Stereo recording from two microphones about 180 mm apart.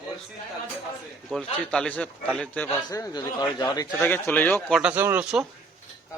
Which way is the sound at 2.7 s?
20° left (ahead or behind).